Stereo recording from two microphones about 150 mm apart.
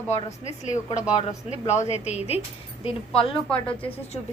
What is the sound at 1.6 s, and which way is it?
A woman's voice, 50° left (ahead or behind).